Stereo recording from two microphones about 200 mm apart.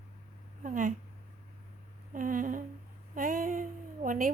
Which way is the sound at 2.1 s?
40° right (ahead or behind).